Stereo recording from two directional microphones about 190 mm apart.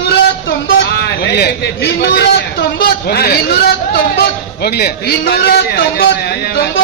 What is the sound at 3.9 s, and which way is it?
A man's voice, 55° left (ahead or behind).